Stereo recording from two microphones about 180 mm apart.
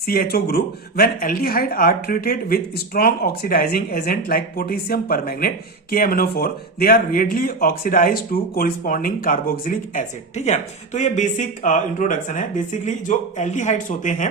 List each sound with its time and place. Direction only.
0.0 s speech: 55° left (ahead or behind)